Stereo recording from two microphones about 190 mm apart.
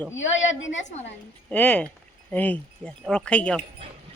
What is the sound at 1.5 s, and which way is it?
Speech, 10° left (ahead or behind).